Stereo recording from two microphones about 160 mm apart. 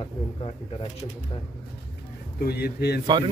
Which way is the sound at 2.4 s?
80° left.